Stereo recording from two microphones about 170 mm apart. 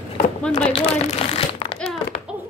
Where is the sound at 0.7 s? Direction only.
35° left (ahead or behind).